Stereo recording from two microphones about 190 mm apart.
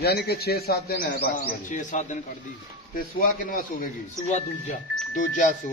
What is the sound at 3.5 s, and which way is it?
Speech, 45° left (ahead or behind).